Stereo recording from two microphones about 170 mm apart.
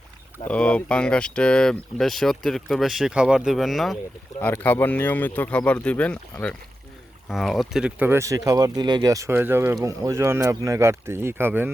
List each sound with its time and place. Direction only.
0.4 s speech: 5° left (ahead or behind)
4.4 s speech: 10° left (ahead or behind)
7.3 s speech: centre (ahead or behind)